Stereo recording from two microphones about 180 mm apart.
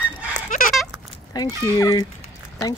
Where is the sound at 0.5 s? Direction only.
45° left (ahead or behind).